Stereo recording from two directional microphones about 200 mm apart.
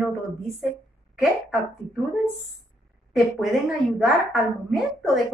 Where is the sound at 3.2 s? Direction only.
Centre (ahead or behind).